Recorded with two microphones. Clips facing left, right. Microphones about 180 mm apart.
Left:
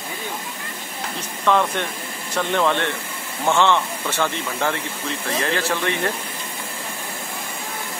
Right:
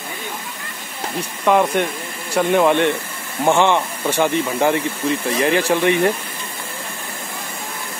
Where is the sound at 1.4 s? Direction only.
15° right (ahead or behind).